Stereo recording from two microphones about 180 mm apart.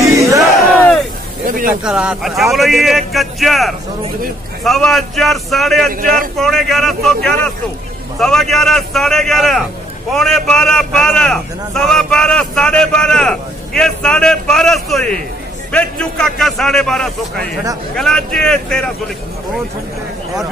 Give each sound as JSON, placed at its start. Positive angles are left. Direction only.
{"t": 0.0, "sound": "battle cry", "side_deg": -15}
{"t": 0.7, "sound": "battle cry", "side_deg": 5}
{"t": 1.4, "sound": "a sound", "side_deg": -50}
{"t": 1.8, "sound": "a man's voice", "side_deg": -5}
{"t": 5.9, "sound": "a man's voice", "side_deg": -50}
{"t": 6.3, "sound": "a man's voice", "side_deg": 0}